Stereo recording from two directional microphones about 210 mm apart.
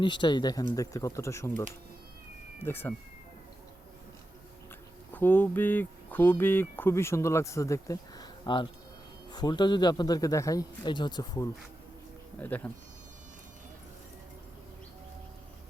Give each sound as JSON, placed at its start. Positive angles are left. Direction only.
{"t": 0.0, "sound": "a man's voice", "side_deg": 20}
{"t": 2.6, "sound": "speech", "side_deg": 10}
{"t": 5.1, "sound": "a man's voice", "side_deg": 10}
{"t": 12.4, "sound": "speech", "side_deg": 10}